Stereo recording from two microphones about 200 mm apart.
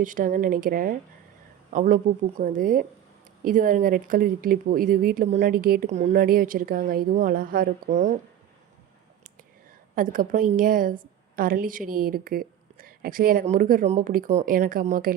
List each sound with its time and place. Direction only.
0.0 s speech: 40° right (ahead or behind)
9.9 s a woman's voice: 45° right (ahead or behind)